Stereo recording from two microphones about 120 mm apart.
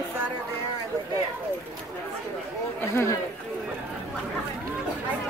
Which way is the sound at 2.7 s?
25° left (ahead or behind).